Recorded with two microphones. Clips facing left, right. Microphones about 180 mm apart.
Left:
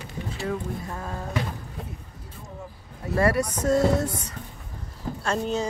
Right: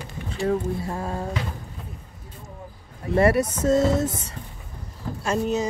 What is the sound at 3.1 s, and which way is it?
Speech, 25° right (ahead or behind).